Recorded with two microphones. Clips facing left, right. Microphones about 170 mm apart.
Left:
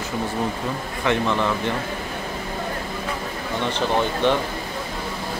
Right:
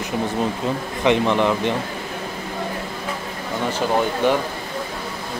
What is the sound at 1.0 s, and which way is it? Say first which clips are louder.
Speech: right 4 dB; 20° right (ahead or behind).